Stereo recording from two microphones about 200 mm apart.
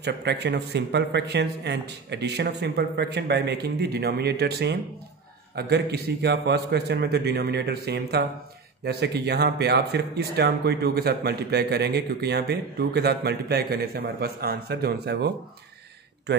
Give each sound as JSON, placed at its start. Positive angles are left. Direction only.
{"t": 0.0, "sound": "speech", "side_deg": -55}